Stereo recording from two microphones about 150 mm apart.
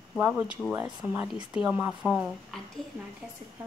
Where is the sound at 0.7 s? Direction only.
10° right (ahead or behind).